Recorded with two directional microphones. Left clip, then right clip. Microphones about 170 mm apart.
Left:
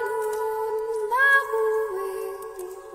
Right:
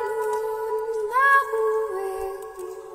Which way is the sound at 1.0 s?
5° right (ahead or behind).